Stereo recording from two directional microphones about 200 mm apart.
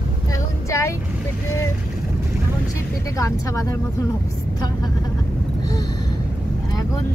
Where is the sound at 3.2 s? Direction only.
15° left (ahead or behind).